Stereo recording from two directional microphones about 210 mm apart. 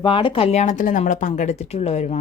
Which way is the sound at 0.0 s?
25° left (ahead or behind).